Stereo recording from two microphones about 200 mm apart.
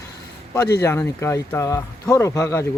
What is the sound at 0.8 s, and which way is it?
Speech, 15° left (ahead or behind).